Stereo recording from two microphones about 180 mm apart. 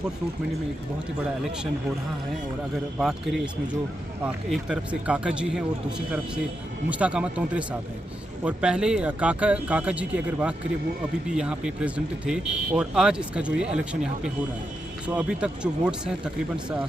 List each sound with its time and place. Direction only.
3.0 s speech: 5° right (ahead or behind)